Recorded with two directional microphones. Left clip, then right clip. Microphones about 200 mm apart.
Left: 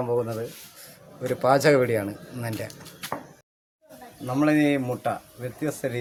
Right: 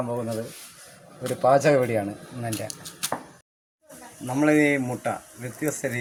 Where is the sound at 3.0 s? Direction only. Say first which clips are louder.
Right 3 dB; 50° right (ahead or behind).